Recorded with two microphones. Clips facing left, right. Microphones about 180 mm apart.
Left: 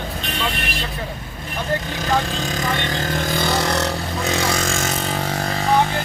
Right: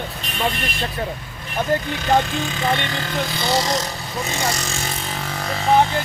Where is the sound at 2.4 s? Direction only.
45° left (ahead or behind); by 4.7 s 60° left (ahead or behind).